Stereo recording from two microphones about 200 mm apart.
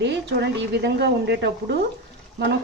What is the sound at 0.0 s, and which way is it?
Speech, 60° right (ahead or behind).